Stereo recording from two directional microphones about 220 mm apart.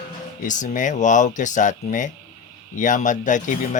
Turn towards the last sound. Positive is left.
turn(degrees=35)  # may be behind; listen again after turning